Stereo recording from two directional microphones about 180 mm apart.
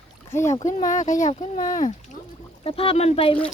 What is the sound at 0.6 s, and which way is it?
Speech, 45° left (ahead or behind).